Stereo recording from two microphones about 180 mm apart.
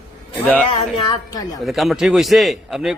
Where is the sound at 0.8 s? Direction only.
30° left (ahead or behind).